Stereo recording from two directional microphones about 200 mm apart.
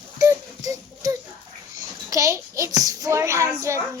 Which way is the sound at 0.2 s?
15° right (ahead or behind).